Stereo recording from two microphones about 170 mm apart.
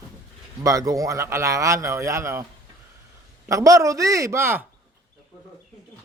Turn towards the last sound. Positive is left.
turn(degrees=-15)  # may be behind; listen again after turning